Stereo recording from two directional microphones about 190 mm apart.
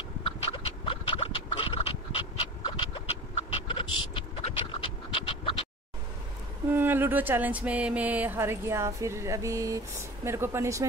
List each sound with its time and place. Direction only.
0.2 s dog: 25° left (ahead or behind)
4.1 s scratch: 30° left (ahead or behind)
6.7 s speech: 10° right (ahead or behind)